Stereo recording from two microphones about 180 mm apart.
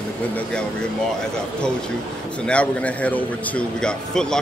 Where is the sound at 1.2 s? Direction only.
5° left (ahead or behind).